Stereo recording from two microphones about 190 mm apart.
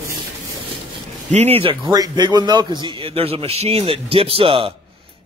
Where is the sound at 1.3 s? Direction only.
35° right (ahead or behind).